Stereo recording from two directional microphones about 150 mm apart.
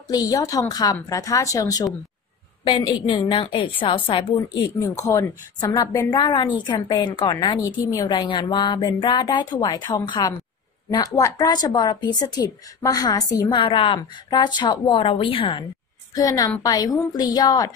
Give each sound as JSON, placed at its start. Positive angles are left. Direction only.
{"t": 0.1, "sound": "a woman's voice", "side_deg": 25}
{"t": 5.0, "sound": "speech", "side_deg": 20}
{"t": 16.3, "sound": "speech", "side_deg": 25}